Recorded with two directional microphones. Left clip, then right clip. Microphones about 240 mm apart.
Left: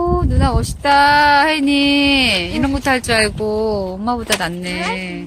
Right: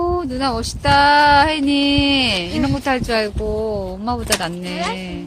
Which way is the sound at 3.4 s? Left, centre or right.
Left.